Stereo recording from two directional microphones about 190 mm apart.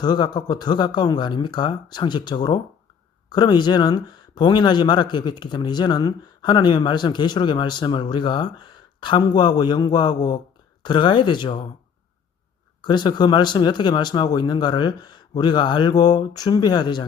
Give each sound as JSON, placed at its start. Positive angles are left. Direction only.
{"t": 0.0, "sound": "speech", "side_deg": 20}
{"t": 12.8, "sound": "speech", "side_deg": 25}